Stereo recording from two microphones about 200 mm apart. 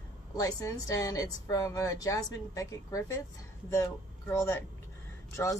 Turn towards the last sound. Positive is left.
turn(degrees=15)  # may be behind; listen again after turning